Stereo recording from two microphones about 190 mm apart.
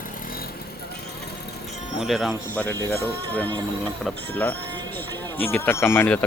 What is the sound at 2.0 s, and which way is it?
Speech, centre (ahead or behind).